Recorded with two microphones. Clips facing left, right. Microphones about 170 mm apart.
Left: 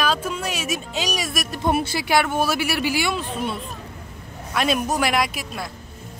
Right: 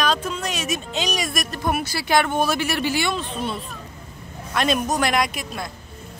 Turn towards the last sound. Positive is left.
turn(degrees=5)  # may be behind; listen again after turning